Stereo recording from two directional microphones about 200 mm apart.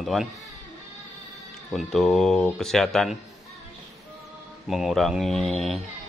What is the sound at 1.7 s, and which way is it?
Speech, centre (ahead or behind).